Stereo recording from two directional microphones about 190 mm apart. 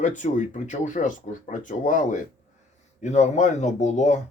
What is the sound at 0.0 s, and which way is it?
Speech, 40° left (ahead or behind).